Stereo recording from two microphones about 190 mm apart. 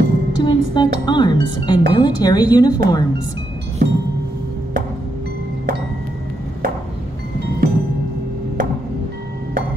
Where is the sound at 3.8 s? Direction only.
45° right (ahead or behind).